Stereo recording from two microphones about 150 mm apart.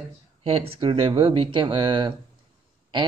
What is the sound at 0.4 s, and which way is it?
Speech, 40° right (ahead or behind).